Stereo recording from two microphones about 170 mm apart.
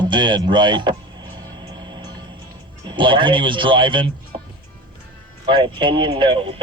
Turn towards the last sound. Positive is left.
turn(degrees=-30)  # may be behind; listen again after turning